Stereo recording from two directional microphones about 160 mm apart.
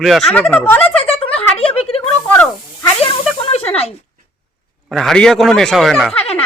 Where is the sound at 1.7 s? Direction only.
35° left (ahead or behind).